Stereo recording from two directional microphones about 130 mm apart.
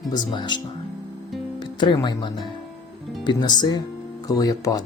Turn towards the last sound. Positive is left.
turn(degrees=30)  # may be behind; listen again after turning